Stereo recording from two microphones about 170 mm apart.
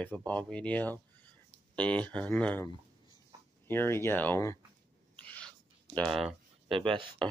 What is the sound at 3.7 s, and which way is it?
Speech, 15° left (ahead or behind).